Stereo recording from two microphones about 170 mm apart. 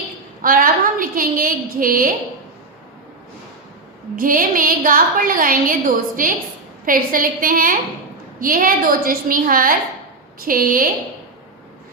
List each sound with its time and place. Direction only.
0.4 s a woman's voice: 55° right (ahead or behind)
4.1 s a woman's voice: 55° right (ahead or behind)